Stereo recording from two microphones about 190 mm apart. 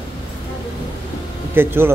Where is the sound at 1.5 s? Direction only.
10° right (ahead or behind).